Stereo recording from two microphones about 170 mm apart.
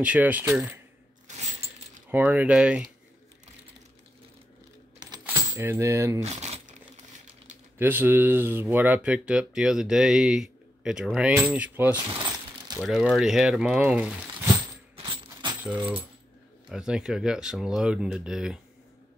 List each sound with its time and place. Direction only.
0.0 s speech: 10° right (ahead or behind)
1.2 s mechanisms: 40° right (ahead or behind)
2.0 s speech: 10° right (ahead or behind)
5.2 s speech: 15° right (ahead or behind)
6.2 s crumpling: 40° right (ahead or behind)
7.8 s speech: 10° right (ahead or behind)
12.0 s speech: 30° right (ahead or behind)
12.3 s a sound: 15° right (ahead or behind)
12.8 s speech: centre (ahead or behind)
15.6 s speech: 10° right (ahead or behind)